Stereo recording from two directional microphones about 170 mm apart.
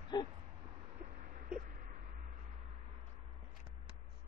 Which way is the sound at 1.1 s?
50° right (ahead or behind).